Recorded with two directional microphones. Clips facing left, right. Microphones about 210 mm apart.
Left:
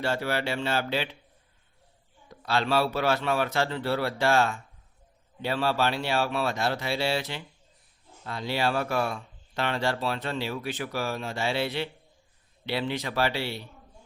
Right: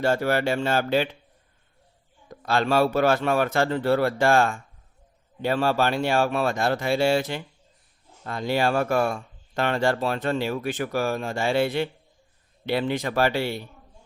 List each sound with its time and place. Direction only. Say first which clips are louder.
0.0 s speech: right 6 dB; 45° right (ahead or behind)
2.3 s speech: right 3 dB; 50° right (ahead or behind)